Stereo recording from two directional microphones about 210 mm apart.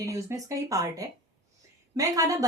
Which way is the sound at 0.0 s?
15° right (ahead or behind).